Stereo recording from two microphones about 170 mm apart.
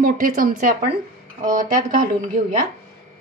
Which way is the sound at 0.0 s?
55° right (ahead or behind).